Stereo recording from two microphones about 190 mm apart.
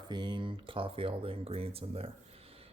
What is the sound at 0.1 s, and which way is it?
Speech, 25° right (ahead or behind).